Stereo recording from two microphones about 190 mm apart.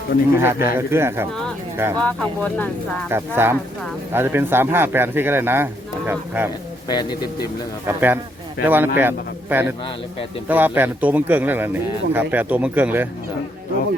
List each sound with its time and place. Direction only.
0.3 s a man's voice: 15° right (ahead or behind)
2.0 s speech: 10° left (ahead or behind)
3.1 s a man's voice: 10° right (ahead or behind)
6.8 s speech: 20° left (ahead or behind)
7.4 s a man's voice: 10° right (ahead or behind)